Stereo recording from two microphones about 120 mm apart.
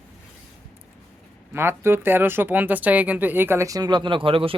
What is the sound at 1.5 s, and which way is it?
Speech, 20° right (ahead or behind).